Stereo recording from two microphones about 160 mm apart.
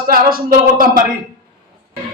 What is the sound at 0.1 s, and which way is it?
Speech, 65° right (ahead or behind).